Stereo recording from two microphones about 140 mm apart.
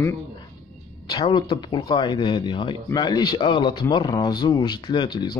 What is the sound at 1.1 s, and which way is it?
Speech, 30° left (ahead or behind).